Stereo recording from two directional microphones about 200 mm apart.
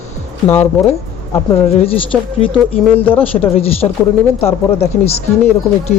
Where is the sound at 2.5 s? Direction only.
10° left (ahead or behind).